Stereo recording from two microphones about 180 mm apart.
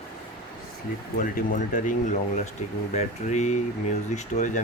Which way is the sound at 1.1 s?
50° left (ahead or behind).